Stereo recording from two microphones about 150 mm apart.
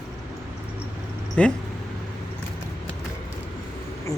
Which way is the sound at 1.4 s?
10° left (ahead or behind).